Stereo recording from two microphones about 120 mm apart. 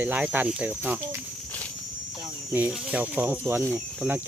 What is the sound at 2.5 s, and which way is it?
Speech, 10° right (ahead or behind).